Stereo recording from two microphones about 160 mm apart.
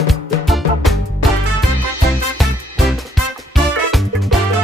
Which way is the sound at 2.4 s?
Centre (ahead or behind).